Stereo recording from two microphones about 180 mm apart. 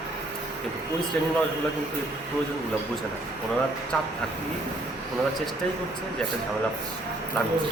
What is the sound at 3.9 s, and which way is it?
Speech, 5° left (ahead or behind).